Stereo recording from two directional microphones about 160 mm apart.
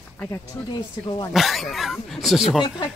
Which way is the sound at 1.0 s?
30° left (ahead or behind).